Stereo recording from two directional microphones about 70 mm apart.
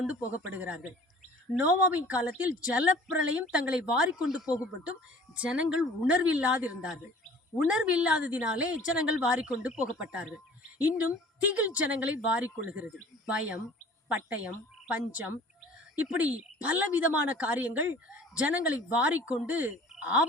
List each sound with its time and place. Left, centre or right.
0.3 s a woman's voice: right